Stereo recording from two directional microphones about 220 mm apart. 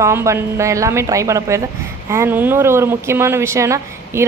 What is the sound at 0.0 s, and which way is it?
Speech, 15° right (ahead or behind).